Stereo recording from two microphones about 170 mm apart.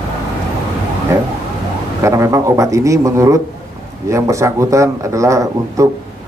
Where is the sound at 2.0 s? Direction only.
20° right (ahead or behind).